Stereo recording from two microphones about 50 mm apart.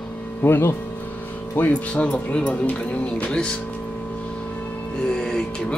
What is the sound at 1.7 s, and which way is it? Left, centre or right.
Speech, left.